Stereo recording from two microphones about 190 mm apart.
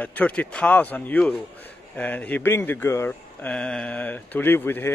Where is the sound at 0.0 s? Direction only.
5° left (ahead or behind).